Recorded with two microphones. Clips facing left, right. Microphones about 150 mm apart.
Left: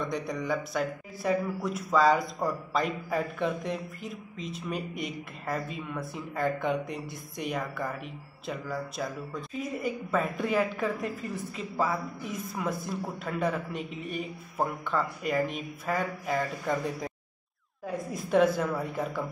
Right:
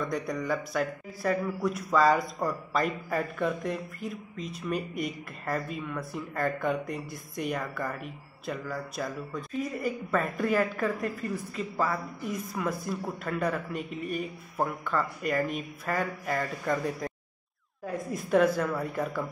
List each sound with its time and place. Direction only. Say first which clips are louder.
0.0 s speech: right 1 dB; centre (ahead or behind)